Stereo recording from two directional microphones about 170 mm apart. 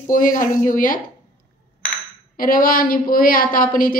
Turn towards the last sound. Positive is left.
turn(degrees=55)  # may be behind; listen again after turning